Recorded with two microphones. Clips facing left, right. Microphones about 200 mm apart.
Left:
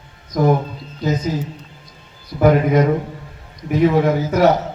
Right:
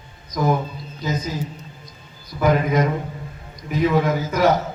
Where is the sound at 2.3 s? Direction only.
30° left (ahead or behind).